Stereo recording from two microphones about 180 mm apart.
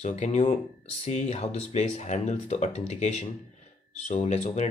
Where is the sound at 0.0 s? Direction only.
40° left (ahead or behind).